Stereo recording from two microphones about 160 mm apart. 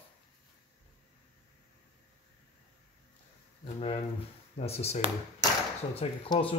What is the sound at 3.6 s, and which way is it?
Speech, 35° left (ahead or behind).